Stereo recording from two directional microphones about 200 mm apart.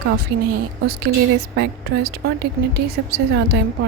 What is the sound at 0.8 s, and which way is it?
A woman's voice, 50° right (ahead or behind).